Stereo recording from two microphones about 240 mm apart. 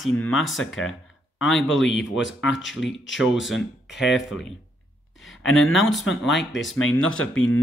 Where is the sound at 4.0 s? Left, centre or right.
Centre.